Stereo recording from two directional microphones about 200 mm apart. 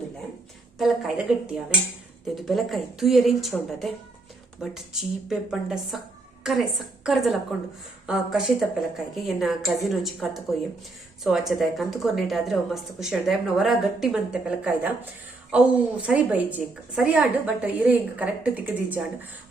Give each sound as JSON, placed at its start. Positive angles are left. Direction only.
{"t": 0.8, "sound": "a woman's voice", "side_deg": 0}